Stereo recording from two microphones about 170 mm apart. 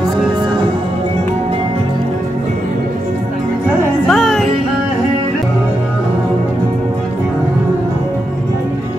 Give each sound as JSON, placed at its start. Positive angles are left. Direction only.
{"t": 4.1, "sound": "music", "side_deg": 0}